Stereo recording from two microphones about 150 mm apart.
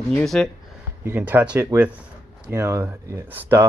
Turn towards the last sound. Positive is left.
turn(degrees=-20)  # may be behind; listen again after turning